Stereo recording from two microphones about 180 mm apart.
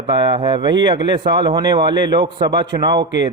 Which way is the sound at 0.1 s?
25° right (ahead or behind).